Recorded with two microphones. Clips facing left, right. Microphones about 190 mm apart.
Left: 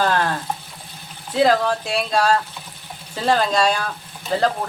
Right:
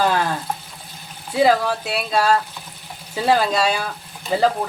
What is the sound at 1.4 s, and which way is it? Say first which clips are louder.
Speech: even; 5° right (ahead or behind).